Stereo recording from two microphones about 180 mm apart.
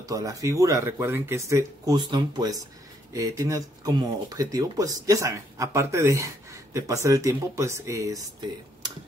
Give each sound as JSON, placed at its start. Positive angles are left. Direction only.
{"t": 0.1, "sound": "speech", "side_deg": -20}